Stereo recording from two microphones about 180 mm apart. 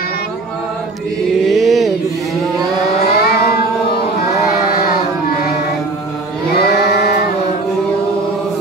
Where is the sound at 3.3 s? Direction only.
60° left (ahead or behind).